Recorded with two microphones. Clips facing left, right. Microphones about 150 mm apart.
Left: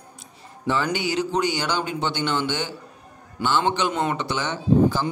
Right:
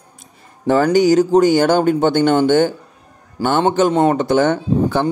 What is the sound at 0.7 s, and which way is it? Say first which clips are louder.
Speech: right 12 dB; 45° right (ahead or behind).